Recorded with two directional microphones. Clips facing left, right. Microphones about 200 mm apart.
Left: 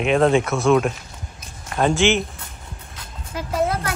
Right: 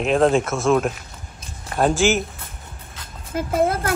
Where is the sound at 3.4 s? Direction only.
50° right (ahead or behind).